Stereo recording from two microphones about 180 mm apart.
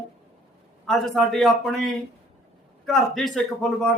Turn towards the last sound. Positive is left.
turn(degrees=0)  # may be behind; listen again after turning